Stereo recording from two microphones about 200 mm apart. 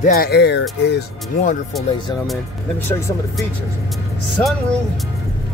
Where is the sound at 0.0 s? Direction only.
50° left (ahead or behind).